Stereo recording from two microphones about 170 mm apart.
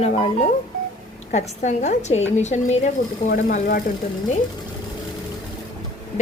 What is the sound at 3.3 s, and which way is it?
Speech, 55° left (ahead or behind).